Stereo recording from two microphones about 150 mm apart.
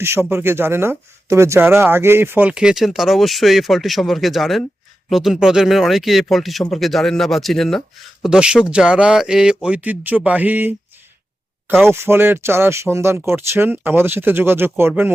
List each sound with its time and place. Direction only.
0.0 s speech: 15° right (ahead or behind)